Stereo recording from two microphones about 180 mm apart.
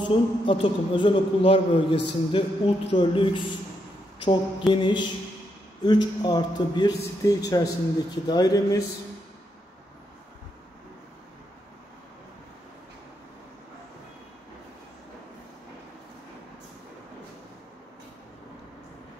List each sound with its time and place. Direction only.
0.1 s a man's voice: 25° left (ahead or behind)